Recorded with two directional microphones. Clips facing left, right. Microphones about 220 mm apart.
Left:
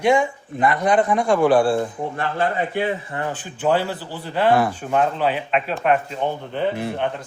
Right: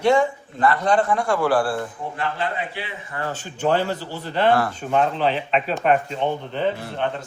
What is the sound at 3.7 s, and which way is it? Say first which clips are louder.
A man's voice: left 1 dB; 10° left (ahead or behind).